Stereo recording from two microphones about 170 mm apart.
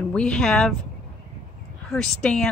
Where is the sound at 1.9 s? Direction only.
5° left (ahead or behind).